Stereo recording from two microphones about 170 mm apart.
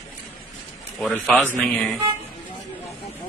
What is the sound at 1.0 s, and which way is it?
Speech, centre (ahead or behind).